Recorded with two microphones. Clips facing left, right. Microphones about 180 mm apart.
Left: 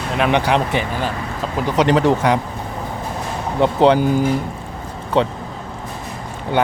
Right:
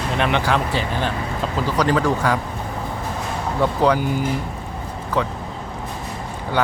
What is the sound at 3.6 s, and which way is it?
Speech, 25° left (ahead or behind).